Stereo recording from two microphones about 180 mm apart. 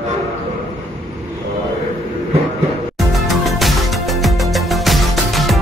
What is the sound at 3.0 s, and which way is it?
Music, centre (ahead or behind).